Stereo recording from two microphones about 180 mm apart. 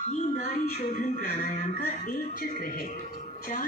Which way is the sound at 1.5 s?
40° left (ahead or behind).